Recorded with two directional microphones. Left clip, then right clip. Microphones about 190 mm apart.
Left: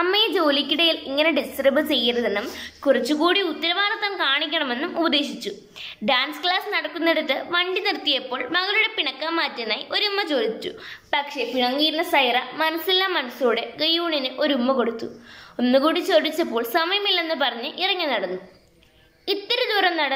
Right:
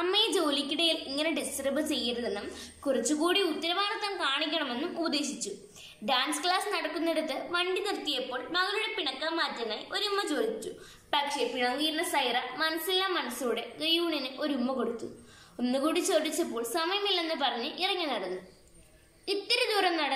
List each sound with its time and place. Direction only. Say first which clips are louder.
0.0 s a woman's voice: left 8 dB; centre (ahead or behind)
19.2 s a woman's voice: left 6 dB; 5° right (ahead or behind)